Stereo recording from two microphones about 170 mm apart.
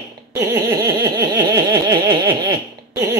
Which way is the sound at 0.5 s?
15° right (ahead or behind).